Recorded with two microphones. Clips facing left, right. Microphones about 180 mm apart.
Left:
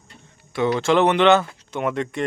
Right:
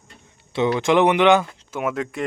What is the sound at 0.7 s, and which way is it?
Speech, 15° right (ahead or behind).